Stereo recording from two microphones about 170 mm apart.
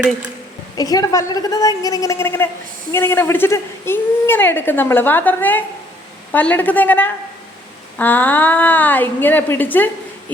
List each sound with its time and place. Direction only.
0.8 s a woman's voice: 20° left (ahead or behind)